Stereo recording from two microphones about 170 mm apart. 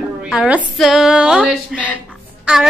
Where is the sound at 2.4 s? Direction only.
5° right (ahead or behind).